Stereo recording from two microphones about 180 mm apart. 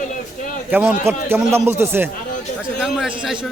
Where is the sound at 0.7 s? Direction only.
10° right (ahead or behind).